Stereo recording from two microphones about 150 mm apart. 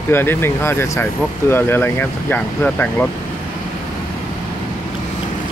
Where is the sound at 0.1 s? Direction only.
15° left (ahead or behind).